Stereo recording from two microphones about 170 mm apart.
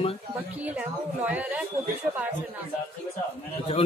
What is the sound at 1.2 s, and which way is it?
Speech, 10° right (ahead or behind).